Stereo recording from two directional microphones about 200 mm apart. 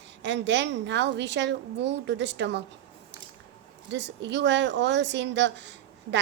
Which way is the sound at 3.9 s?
60° right (ahead or behind).